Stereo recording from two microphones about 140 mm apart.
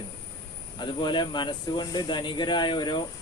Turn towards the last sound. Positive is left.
turn(degrees=30)  # may be behind; listen again after turning